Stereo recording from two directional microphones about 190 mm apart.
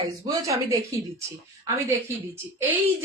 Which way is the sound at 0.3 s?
15° right (ahead or behind).